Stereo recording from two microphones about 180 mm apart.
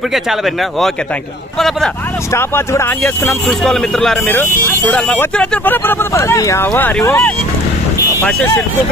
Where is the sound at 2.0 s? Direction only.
10° left (ahead or behind).